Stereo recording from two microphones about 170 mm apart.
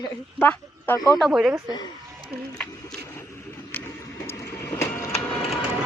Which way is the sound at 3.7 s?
15° left (ahead or behind).